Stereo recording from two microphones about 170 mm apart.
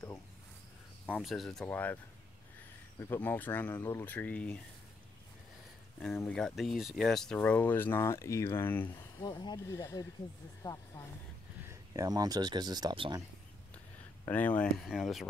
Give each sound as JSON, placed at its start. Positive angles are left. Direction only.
{"t": 1.1, "sound": "speech", "side_deg": 0}
{"t": 3.0, "sound": "speech", "side_deg": 10}
{"t": 5.9, "sound": "speech", "side_deg": 5}
{"t": 9.2, "sound": "speech", "side_deg": 25}
{"t": 11.6, "sound": "speech", "side_deg": -20}
{"t": 14.2, "sound": "speech", "side_deg": 10}